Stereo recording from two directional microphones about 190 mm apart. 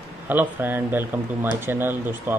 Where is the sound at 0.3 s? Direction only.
10° right (ahead or behind).